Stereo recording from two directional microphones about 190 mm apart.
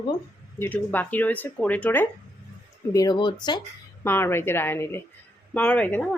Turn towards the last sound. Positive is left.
turn(degrees=5)  # may be behind; listen again after turning